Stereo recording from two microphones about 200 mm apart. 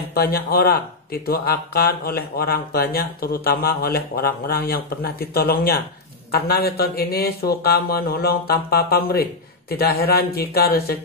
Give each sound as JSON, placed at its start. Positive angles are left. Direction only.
{"t": 0.1, "sound": "speech", "side_deg": 50}